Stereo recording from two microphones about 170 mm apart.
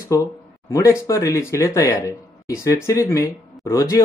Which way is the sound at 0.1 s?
20° left (ahead or behind).